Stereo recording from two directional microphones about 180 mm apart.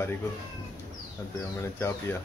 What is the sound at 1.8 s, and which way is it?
Speech, 15° left (ahead or behind).